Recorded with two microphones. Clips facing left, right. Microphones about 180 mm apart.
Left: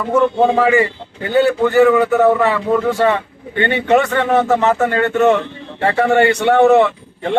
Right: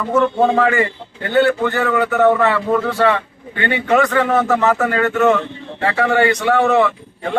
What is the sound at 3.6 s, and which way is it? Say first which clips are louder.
A man's voice: left 2 dB; 25° left (ahead or behind).